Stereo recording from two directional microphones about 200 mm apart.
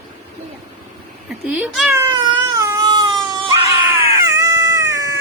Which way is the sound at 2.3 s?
15° right (ahead or behind).